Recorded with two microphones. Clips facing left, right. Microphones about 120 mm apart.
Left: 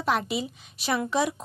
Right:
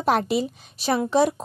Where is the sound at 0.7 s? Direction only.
30° right (ahead or behind).